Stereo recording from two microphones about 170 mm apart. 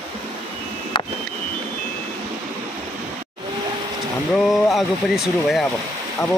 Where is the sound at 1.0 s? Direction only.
25° left (ahead or behind).